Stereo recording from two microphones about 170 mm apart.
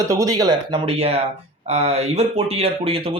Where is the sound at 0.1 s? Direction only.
20° right (ahead or behind).